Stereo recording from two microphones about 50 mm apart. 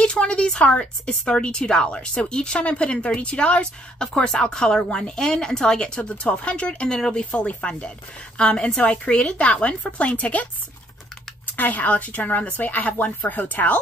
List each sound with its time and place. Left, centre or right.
0.0 s speech: left
6.3 s a woman's voice: left
7.2 s a woman's voice: left
11.4 s speech: left